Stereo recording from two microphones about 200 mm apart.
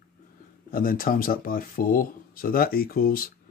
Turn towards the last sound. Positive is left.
turn(degrees=45)  # may be behind; listen again after turning